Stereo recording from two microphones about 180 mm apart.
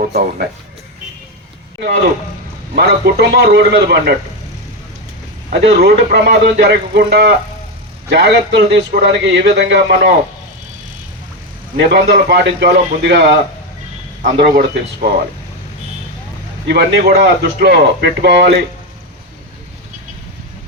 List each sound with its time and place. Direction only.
0.0 s a man's voice: 55° right (ahead or behind)
2.7 s a man's voice: 65° right (ahead or behind)
5.5 s a man's voice: 60° right (ahead or behind)
11.8 s a man's voice: 65° right (ahead or behind)
16.6 s a man's voice: 65° right (ahead or behind)